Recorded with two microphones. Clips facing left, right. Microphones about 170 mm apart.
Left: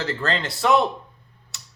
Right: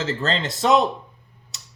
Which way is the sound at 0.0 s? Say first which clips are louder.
Right 1 dB; 20° right (ahead or behind).